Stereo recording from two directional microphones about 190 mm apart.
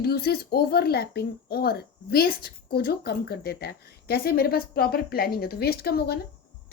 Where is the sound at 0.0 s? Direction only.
55° left (ahead or behind).